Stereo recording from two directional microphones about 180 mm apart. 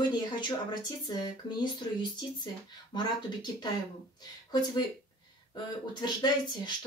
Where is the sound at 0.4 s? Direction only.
25° left (ahead or behind).